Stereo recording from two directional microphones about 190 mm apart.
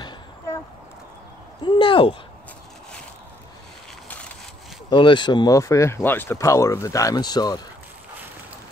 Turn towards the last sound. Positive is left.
turn(degrees=20)  # may be behind; listen again after turning